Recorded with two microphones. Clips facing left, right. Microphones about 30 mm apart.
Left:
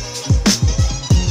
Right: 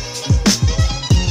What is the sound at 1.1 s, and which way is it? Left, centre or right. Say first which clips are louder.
Music: even; centre.